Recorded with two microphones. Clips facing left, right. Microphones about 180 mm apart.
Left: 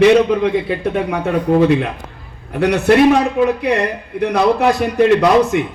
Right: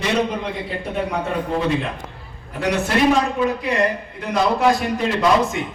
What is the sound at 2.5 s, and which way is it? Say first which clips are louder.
A man's voice: left 8 dB; 60° left (ahead or behind).